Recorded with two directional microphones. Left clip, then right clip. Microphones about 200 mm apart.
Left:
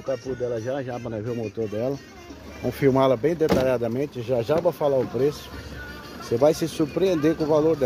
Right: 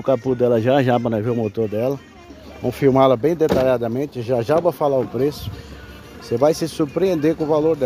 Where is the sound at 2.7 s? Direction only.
25° right (ahead or behind).